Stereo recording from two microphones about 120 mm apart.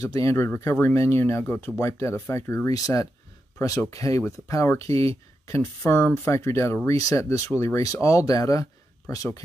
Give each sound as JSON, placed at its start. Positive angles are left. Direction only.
{"t": 0.0, "sound": "speech", "side_deg": 30}